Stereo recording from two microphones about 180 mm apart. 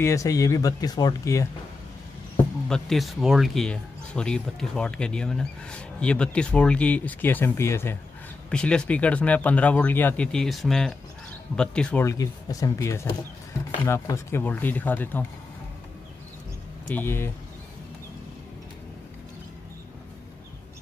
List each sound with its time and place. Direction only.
0.0 s speech: 15° left (ahead or behind)
2.7 s speech: centre (ahead or behind)
16.9 s speech: 10° left (ahead or behind)